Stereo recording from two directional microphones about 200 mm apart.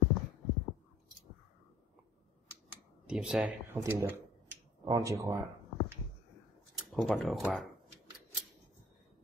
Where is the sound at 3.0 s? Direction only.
5° right (ahead or behind).